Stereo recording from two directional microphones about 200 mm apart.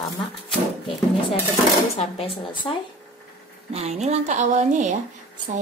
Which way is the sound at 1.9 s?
30° left (ahead or behind).